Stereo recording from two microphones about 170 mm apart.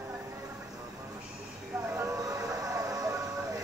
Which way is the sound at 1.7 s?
15° right (ahead or behind).